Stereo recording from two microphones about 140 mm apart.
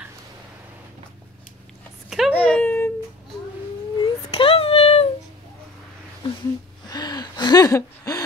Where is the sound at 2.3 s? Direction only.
10° left (ahead or behind).